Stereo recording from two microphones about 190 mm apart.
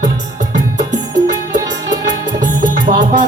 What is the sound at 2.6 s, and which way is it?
Music, 45° right (ahead or behind).